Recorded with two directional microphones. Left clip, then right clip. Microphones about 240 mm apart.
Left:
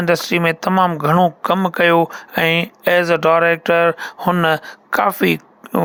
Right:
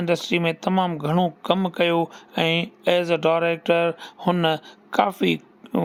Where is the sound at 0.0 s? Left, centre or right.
Centre.